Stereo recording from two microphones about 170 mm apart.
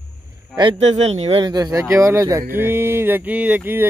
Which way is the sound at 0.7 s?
40° right (ahead or behind).